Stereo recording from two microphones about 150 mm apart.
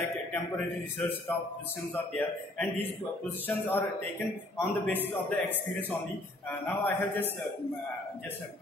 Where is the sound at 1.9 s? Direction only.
10° left (ahead or behind).